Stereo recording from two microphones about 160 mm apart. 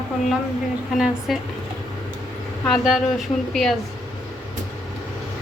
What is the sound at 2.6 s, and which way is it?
A woman's voice, centre (ahead or behind).